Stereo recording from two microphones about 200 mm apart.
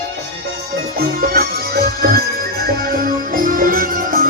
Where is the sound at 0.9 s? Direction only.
50° right (ahead or behind).